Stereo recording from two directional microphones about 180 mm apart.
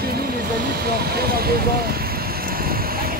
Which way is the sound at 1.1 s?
60° right (ahead or behind).